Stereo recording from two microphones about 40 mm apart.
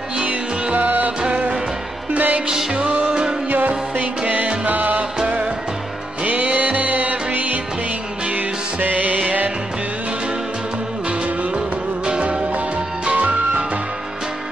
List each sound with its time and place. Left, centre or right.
0.7 s music: right
1.2 s music: right
2.1 s music: right
2.4 s music: right
2.9 s music: right
3.4 s music: right
5.2 s music: right
6.2 s music: right
12.1 s music: right